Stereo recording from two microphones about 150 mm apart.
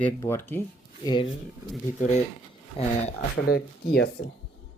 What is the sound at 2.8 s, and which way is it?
Speech, 40° left (ahead or behind).